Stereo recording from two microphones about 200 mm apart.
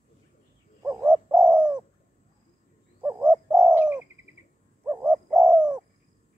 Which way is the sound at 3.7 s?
10° right (ahead or behind).